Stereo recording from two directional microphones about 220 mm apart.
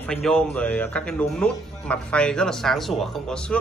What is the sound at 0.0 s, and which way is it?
Speech, 5° left (ahead or behind).